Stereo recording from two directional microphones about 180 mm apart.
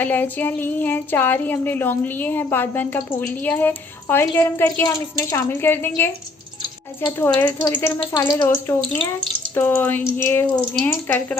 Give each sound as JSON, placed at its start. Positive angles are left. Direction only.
{"t": 0.0, "sound": "speech", "side_deg": 10}
{"t": 7.2, "sound": "speech", "side_deg": 10}